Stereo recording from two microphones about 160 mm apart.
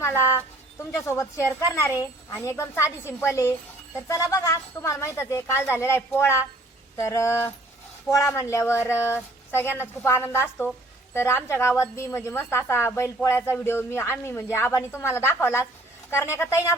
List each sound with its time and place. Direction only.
0.3 s a woman's voice: 15° left (ahead or behind)